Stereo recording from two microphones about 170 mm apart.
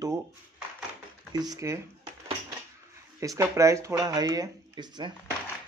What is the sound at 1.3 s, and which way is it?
Speech, 20° right (ahead or behind).